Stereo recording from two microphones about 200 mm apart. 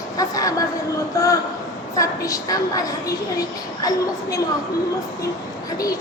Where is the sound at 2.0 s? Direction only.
15° left (ahead or behind).